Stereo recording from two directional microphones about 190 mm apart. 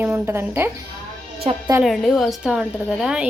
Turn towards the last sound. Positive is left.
turn(degrees=-5)  # may be behind; listen again after turning